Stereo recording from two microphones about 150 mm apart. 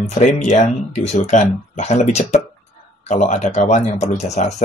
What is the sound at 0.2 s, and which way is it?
Speech, 50° left (ahead or behind).